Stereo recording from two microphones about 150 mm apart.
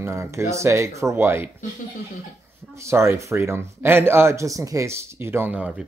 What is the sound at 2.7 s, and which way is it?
Speech, 20° right (ahead or behind).